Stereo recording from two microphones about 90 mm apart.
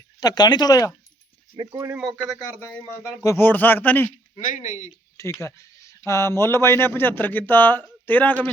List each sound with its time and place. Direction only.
0.2 s speech: 50° left (ahead or behind)
1.7 s speech: 35° right (ahead or behind)
2.5 s a man's voice: 20° left (ahead or behind)
5.1 s a man's voice: 35° left (ahead or behind)